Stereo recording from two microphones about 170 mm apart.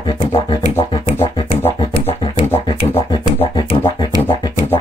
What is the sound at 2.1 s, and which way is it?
Didgeridoo, 20° left (ahead or behind).